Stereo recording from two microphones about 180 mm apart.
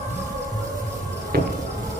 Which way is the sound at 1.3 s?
60° right (ahead or behind).